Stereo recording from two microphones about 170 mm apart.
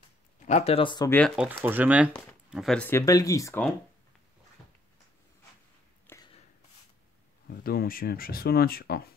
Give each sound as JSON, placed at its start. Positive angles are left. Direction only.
{"t": 0.5, "sound": "speech", "side_deg": 40}
{"t": 1.3, "sound": "speech", "side_deg": -10}
{"t": 2.5, "sound": "speech", "side_deg": 0}
{"t": 6.1, "sound": "a sound", "side_deg": 15}
{"t": 7.4, "sound": "speech", "side_deg": 60}